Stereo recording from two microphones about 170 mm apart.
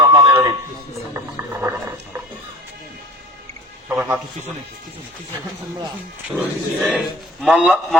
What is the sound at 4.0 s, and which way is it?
Speech, 10° right (ahead or behind).